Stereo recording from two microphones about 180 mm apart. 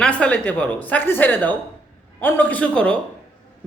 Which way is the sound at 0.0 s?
5° left (ahead or behind).